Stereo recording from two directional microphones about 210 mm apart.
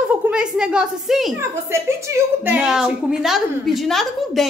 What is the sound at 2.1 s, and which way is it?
A woman's voice, 15° right (ahead or behind).